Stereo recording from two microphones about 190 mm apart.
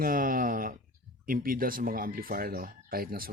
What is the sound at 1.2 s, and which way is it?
Speech, 50° right (ahead or behind).